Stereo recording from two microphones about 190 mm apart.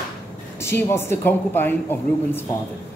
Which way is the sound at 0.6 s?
15° left (ahead or behind).